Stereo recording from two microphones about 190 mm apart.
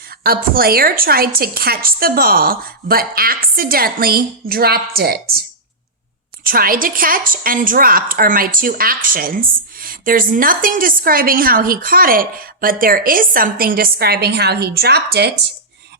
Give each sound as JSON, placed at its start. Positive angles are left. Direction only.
{"t": 0.2, "sound": "a woman's voice", "side_deg": -50}
{"t": 6.4, "sound": "a woman's voice", "side_deg": -50}